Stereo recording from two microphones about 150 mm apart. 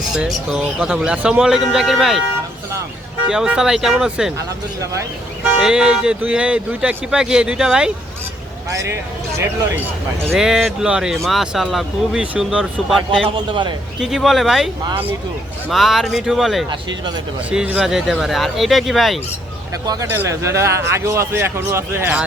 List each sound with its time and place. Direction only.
0.1 s speech: 5° right (ahead or behind)
3.2 s speech: 5° right (ahead or behind)
5.6 s speech: 5° right (ahead or behind)
8.7 s speech: 20° right (ahead or behind)
10.2 s speech: centre (ahead or behind)
13.2 s a man's voice: 35° right (ahead or behind)
14.0 s speech: centre (ahead or behind)
15.7 s speech: centre (ahead or behind)
19.9 s a man's voice: 20° right (ahead or behind)